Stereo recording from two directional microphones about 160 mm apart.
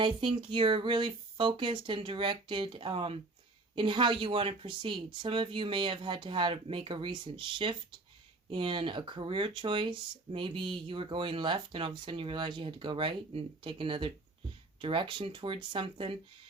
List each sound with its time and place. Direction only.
0.0 s speech: 30° right (ahead or behind)